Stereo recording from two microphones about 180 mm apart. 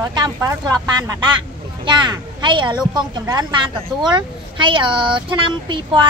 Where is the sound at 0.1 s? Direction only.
20° right (ahead or behind).